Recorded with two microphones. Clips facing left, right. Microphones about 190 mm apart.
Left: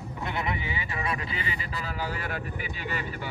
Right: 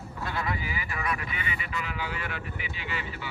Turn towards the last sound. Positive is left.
turn(degrees=45)  # may be behind; listen again after turning